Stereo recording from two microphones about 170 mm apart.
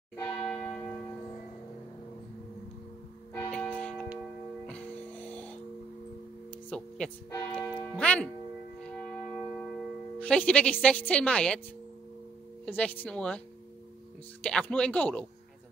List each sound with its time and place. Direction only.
0.1 s church bell: 5° left (ahead or behind)
3.3 s music: 10° left (ahead or behind)
6.7 s speech: 5° left (ahead or behind)
7.5 s music: 5° left (ahead or behind)
8.8 s church bell: 5° left (ahead or behind)
12.6 s speech: 10° left (ahead or behind)
14.4 s speech: 5° left (ahead or behind)